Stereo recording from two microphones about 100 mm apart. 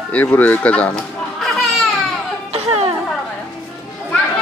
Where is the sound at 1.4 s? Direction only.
Centre (ahead or behind).